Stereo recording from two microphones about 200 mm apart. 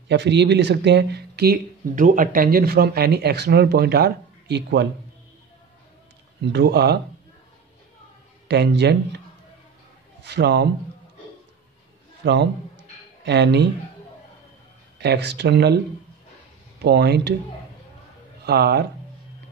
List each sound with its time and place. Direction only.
0.1 s speech: 60° right (ahead or behind)
6.4 s speech: 55° right (ahead or behind)
8.5 s speech: 60° right (ahead or behind)
10.2 s speech: 55° right (ahead or behind)
12.2 s a man's voice: 60° right (ahead or behind)
15.0 s speech: 60° right (ahead or behind)
16.8 s speech: 55° right (ahead or behind)
18.4 s speech: 55° right (ahead or behind)